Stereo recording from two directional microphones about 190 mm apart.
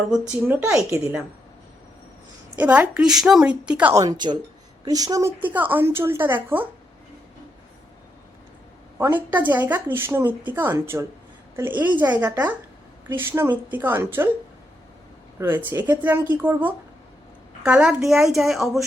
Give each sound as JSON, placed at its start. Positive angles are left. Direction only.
{"t": 0.1, "sound": "speech", "side_deg": -10}
{"t": 2.6, "sound": "speech", "side_deg": -10}
{"t": 4.0, "sound": "speech", "side_deg": -20}
{"t": 9.0, "sound": "speech", "side_deg": -10}
{"t": 15.4, "sound": "a woman's voice", "side_deg": -10}